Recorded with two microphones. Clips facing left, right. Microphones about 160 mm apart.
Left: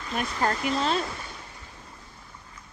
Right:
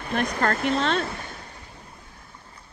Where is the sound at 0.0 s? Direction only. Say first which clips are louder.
Right 3 dB; 60° right (ahead or behind).